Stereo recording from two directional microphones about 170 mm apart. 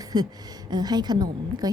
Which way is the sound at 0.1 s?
25° right (ahead or behind).